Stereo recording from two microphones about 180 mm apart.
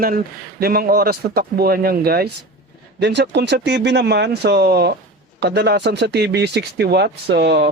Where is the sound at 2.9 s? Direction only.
70° right (ahead or behind).